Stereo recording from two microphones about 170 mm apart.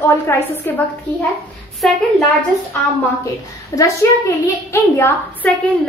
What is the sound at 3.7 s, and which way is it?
A woman's voice, 20° left (ahead or behind).